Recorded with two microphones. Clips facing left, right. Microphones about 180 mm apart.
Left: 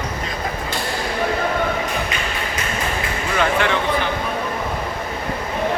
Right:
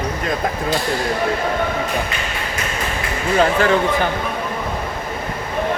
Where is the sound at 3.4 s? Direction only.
40° right (ahead or behind).